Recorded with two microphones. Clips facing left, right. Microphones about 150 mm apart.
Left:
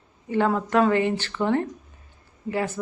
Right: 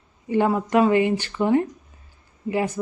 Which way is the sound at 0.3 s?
10° right (ahead or behind).